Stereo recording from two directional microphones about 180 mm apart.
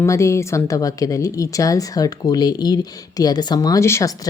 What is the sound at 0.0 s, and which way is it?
A woman's voice, 15° left (ahead or behind).